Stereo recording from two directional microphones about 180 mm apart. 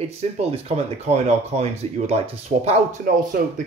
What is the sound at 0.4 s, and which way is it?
Speech, 35° right (ahead or behind).